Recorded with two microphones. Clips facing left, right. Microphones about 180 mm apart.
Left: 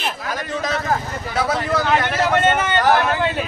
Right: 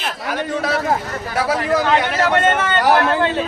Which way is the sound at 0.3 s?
10° right (ahead or behind).